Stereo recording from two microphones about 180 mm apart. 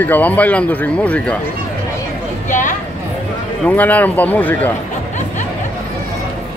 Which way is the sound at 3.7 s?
10° left (ahead or behind).